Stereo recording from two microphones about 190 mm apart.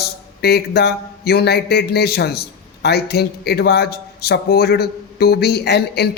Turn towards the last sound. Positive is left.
turn(degrees=60)  # may be behind; listen again after turning